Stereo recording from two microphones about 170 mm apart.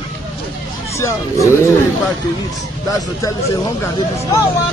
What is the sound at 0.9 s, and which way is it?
Speech, 15° left (ahead or behind).